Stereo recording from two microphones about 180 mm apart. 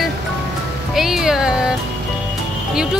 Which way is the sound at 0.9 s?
Centre (ahead or behind).